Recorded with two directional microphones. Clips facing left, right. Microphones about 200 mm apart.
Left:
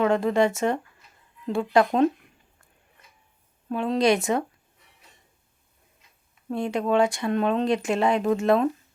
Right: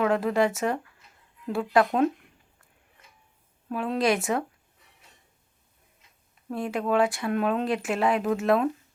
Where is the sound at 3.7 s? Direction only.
5° right (ahead or behind).